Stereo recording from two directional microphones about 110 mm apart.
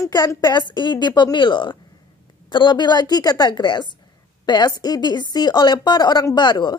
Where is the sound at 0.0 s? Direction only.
35° left (ahead or behind).